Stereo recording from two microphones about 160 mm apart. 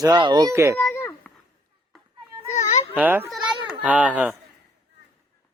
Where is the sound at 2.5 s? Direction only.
45° left (ahead or behind).